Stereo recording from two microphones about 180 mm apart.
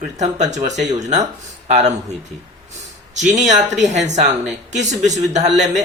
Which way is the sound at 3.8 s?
40° right (ahead or behind).